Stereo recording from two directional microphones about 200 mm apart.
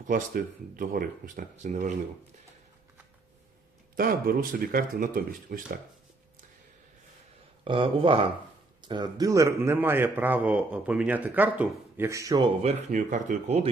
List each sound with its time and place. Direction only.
0.1 s speech: 45° right (ahead or behind)
3.9 s speech: 45° right (ahead or behind)
7.6 s a man's voice: 25° right (ahead or behind)
12.6 s speech: 35° right (ahead or behind)